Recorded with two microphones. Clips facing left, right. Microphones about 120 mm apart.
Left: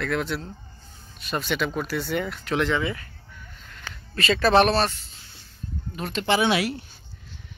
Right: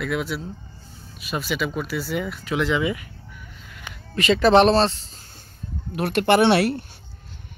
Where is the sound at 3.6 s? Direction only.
15° right (ahead or behind); by 5.2 s 30° right (ahead or behind).